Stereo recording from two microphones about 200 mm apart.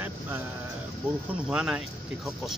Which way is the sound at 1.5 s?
5° right (ahead or behind).